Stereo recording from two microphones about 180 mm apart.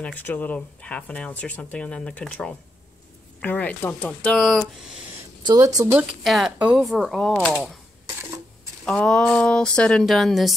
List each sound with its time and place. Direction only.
0.0 s speech: 10° left (ahead or behind)
5.4 s speech: 20° right (ahead or behind)
5.9 s speech: centre (ahead or behind)
8.8 s speech: centre (ahead or behind)